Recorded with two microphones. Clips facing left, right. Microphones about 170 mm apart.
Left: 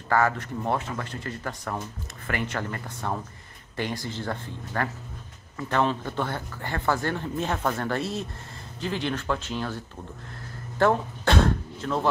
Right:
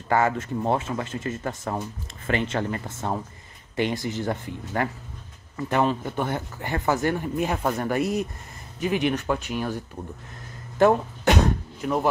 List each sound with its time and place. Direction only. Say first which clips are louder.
0.1 s speech: right 2 dB; 20° right (ahead or behind)
10.8 s throat clearing: right 3 dB; 15° right (ahead or behind)